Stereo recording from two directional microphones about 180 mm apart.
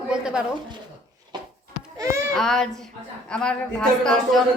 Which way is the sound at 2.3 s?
Centre (ahead or behind).